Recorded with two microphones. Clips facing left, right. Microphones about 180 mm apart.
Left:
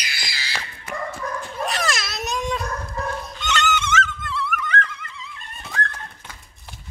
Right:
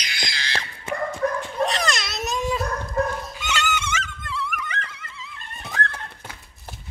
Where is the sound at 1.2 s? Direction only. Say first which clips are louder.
Right 9 dB; 55° right (ahead or behind).